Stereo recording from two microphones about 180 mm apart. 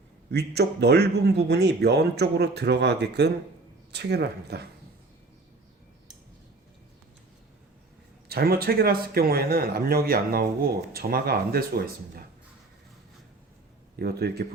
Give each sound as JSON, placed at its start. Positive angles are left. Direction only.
{"t": 0.3, "sound": "a man's voice", "side_deg": -65}
{"t": 8.3, "sound": "a man's voice", "side_deg": -60}
{"t": 14.0, "sound": "a man's voice", "side_deg": -60}